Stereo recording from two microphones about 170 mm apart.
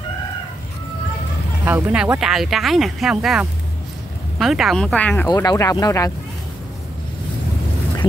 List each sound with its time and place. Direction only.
1.6 s speech: 10° right (ahead or behind); by 5.3 s 10° left (ahead or behind)
5.3 s speech: 20° left (ahead or behind)